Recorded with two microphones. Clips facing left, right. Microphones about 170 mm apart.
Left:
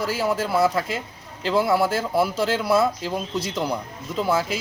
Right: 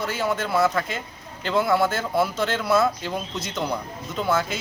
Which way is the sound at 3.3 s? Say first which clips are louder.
Left 4 dB; 30° left (ahead or behind).